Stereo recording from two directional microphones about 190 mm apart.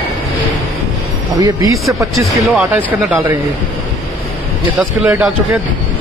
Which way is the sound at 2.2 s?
5° right (ahead or behind).